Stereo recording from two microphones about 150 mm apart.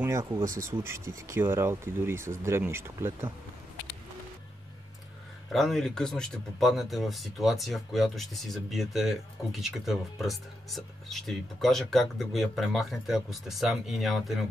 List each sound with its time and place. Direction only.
0.0 s speech: 20° right (ahead or behind)
5.5 s speech: centre (ahead or behind)